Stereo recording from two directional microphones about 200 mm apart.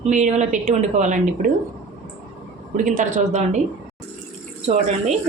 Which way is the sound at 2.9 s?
40° right (ahead or behind).